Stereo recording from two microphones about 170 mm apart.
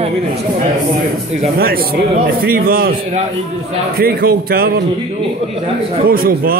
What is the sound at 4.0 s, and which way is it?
Speech, 60° right (ahead or behind).